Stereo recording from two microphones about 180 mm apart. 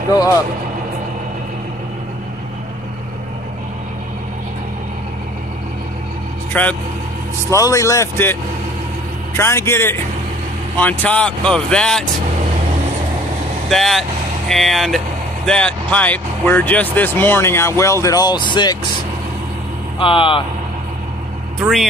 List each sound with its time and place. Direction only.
6.5 s speech: 10° left (ahead or behind)
9.4 s speech: 15° left (ahead or behind)
13.7 s speech: centre (ahead or behind); by 18.8 s 25° left (ahead or behind)
20.0 s speech: 30° left (ahead or behind)